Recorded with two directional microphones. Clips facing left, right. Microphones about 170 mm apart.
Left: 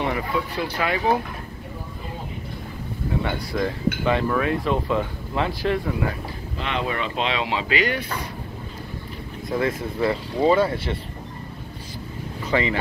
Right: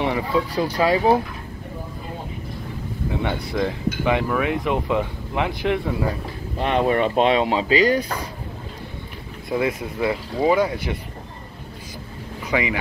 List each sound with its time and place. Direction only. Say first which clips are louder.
0.0 s a sound: right 3 dB; 20° right (ahead or behind)
0.6 s speech: right 5 dB; 35° right (ahead or behind)
3.2 s speech: right 1 dB; 20° right (ahead or behind)
6.6 s speech: right 8 dB; 50° right (ahead or behind)
9.6 s speech: even; 15° right (ahead or behind)
12.4 s speech: even; 10° right (ahead or behind)